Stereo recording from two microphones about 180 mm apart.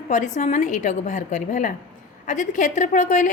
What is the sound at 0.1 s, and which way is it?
A woman's voice, 40° left (ahead or behind).